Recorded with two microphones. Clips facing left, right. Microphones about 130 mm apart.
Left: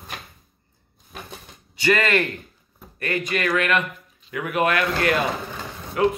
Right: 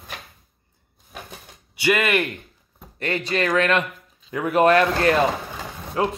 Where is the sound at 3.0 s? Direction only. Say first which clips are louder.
Right 1 dB; 30° right (ahead or behind).